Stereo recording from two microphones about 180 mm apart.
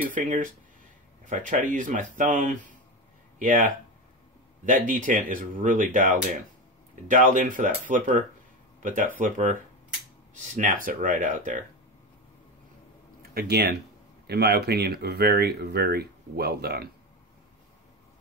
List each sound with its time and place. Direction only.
0.1 s speech: 45° right (ahead or behind)
1.5 s speech: 45° right (ahead or behind)
13.3 s speech: 65° right (ahead or behind)